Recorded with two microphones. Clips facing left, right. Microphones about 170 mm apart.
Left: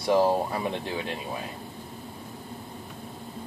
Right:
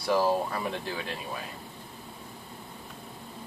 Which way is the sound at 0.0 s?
20° left (ahead or behind).